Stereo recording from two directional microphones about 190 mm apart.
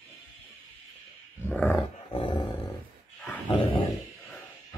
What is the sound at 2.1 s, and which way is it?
Dog, 25° left (ahead or behind).